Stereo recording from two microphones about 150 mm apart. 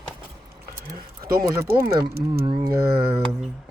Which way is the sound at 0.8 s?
80° right.